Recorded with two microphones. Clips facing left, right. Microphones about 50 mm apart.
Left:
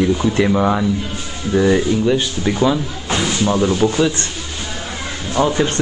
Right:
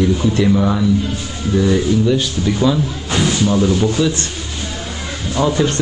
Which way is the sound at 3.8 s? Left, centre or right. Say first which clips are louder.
Even; left.